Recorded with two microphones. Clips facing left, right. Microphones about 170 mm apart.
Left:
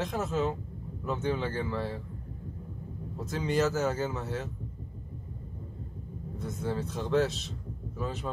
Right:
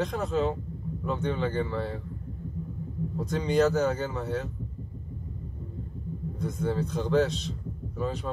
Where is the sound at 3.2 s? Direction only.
Centre (ahead or behind).